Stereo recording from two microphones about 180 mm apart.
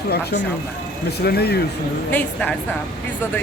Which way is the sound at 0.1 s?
65° left (ahead or behind).